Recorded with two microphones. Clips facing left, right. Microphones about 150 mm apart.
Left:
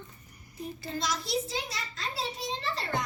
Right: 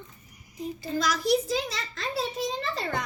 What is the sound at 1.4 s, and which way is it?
Speech, 90° right.